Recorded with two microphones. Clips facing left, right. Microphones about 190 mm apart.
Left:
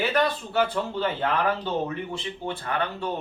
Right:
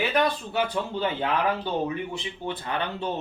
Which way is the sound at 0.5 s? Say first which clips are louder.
Left 2 dB; 15° right (ahead or behind).